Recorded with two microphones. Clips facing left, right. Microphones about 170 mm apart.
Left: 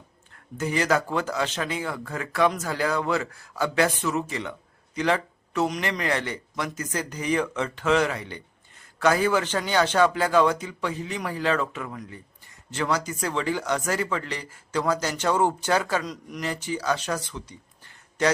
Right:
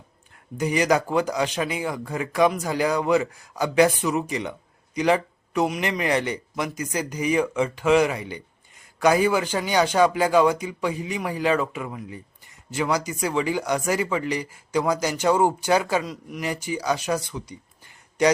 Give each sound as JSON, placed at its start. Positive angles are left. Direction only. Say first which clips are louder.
{"t": 0.5, "sound": "speech", "louder": "right 3 dB", "side_deg": -15}